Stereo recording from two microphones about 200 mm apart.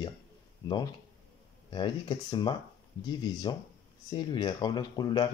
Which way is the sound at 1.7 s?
20° left (ahead or behind).